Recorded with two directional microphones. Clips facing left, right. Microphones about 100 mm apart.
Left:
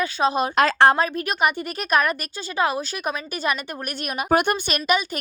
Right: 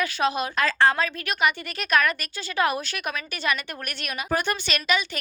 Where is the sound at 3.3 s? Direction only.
40° left (ahead or behind).